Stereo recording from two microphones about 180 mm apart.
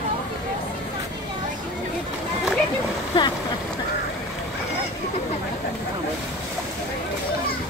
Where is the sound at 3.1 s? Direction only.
25° left (ahead or behind).